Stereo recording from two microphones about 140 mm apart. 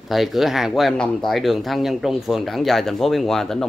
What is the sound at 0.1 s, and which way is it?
Speech, centre (ahead or behind).